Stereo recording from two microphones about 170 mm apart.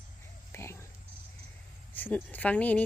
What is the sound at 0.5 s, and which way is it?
Oink, 15° left (ahead or behind).